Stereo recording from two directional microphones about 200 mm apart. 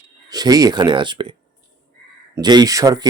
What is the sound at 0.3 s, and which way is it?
Speech, 20° right (ahead or behind).